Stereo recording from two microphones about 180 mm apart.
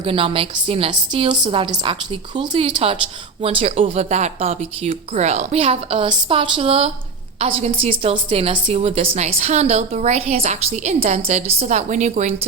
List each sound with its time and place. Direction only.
0.0 s a woman's voice: 30° right (ahead or behind)